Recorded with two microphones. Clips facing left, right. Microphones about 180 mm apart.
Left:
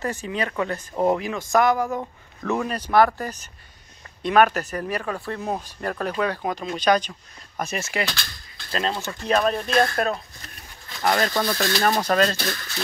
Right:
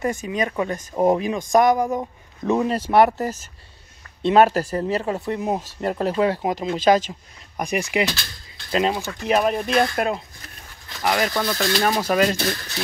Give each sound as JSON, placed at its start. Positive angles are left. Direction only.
{"t": 0.3, "sound": "speech", "side_deg": -20}